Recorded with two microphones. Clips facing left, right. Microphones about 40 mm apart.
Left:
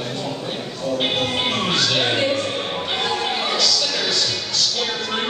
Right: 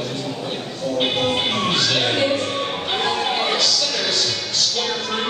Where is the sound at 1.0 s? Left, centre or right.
Centre.